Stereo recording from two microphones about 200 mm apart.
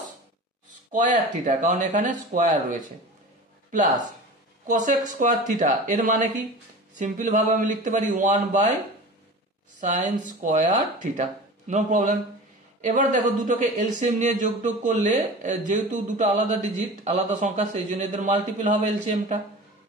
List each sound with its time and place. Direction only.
0.9 s speech: 40° right (ahead or behind)
9.8 s speech: 40° right (ahead or behind)